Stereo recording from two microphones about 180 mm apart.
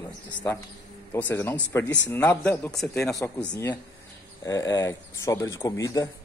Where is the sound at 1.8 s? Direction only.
85° left.